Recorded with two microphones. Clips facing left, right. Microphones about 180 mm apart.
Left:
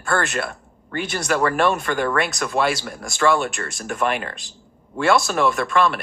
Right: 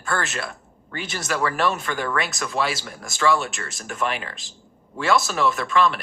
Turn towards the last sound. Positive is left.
turn(degrees=55)  # may be behind; listen again after turning